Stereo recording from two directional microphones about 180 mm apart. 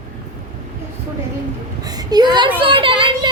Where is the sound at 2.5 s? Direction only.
30° right (ahead or behind).